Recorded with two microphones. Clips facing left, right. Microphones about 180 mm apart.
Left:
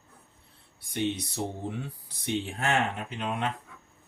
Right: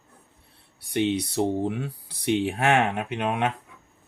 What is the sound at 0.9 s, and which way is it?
Speech, 70° right (ahead or behind).